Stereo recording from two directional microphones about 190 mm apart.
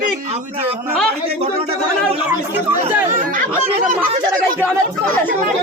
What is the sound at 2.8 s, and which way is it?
Speech, 40° right (ahead or behind).